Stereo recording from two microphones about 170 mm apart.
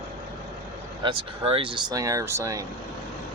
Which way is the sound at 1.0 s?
30° right (ahead or behind).